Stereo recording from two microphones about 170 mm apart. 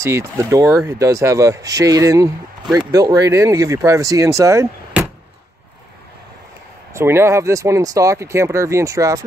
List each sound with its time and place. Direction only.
0.0 s speech: 15° right (ahead or behind)
6.9 s speech: 15° right (ahead or behind)